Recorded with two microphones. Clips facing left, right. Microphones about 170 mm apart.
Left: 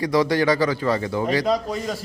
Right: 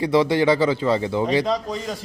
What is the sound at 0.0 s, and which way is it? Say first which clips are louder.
Speech: right 2 dB; 25° right (ahead or behind).